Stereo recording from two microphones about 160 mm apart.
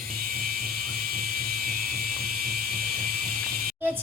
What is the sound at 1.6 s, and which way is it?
Music, 65° right (ahead or behind).